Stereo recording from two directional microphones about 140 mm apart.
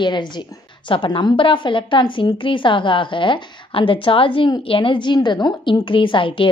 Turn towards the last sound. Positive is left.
turn(degrees=35)  # may be behind; listen again after turning